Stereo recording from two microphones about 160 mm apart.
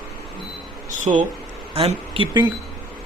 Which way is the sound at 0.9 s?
50° right (ahead or behind).